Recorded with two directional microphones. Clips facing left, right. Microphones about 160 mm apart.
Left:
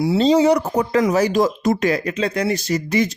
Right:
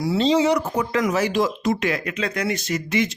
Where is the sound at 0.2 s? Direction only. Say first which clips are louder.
Left 4 dB; 40° left (ahead or behind).